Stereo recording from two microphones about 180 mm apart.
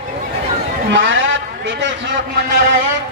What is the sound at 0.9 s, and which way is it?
A man's voice, 90° right.